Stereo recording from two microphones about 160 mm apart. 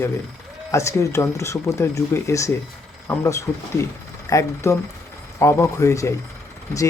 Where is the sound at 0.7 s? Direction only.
20° left (ahead or behind).